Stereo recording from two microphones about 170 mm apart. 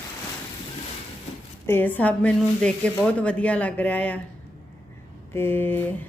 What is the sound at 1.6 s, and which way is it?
A woman's voice, 10° left (ahead or behind).